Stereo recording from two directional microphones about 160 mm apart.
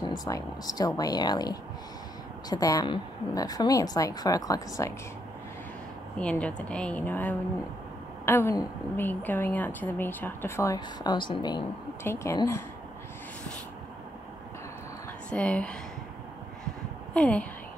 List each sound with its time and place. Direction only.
0.0 s a woman's voice: 25° left (ahead or behind)
6.1 s a woman's voice: 5° left (ahead or behind); by 11.6 s 30° left (ahead or behind)
12.0 s a woman's voice: 15° left (ahead or behind)
15.2 s a woman's voice: 10° left (ahead or behind)
17.1 s a woman's voice: 5° left (ahead or behind)